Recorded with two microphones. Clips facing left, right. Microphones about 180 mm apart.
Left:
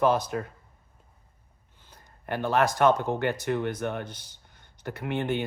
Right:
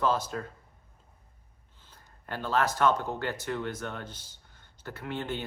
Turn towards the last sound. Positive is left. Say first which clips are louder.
# left 6 dB
turn(degrees=15)  # may be behind; listen again after turning